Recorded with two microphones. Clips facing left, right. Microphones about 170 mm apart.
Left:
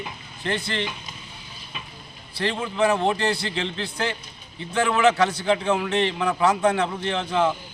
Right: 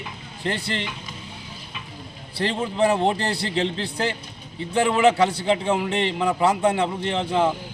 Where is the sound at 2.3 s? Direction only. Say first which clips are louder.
Right 1 dB; 35° right (ahead or behind).